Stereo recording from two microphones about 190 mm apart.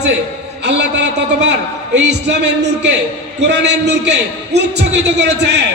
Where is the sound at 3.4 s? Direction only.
65° right (ahead or behind).